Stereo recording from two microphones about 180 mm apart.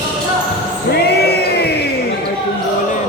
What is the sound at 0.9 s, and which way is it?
Music, 65° left (ahead or behind).